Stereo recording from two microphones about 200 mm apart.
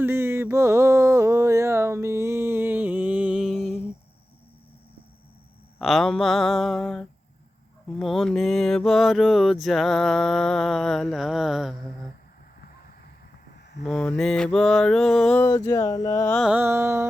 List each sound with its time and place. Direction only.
0.0 s music: 10° right (ahead or behind)
5.8 s mantra: centre (ahead or behind)
13.8 s mantra: centre (ahead or behind)
15.4 s a sound: 15° left (ahead or behind)
16.3 s music: 5° right (ahead or behind)